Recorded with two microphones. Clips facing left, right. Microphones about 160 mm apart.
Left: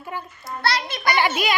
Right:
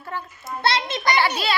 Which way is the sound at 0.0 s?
10° left (ahead or behind).